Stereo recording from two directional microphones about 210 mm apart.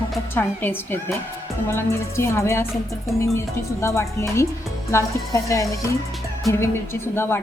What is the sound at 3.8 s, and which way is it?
Speech, 15° left (ahead or behind).